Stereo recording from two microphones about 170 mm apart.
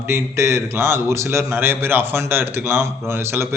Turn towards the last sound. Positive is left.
turn(degrees=-15)  # may be behind; listen again after turning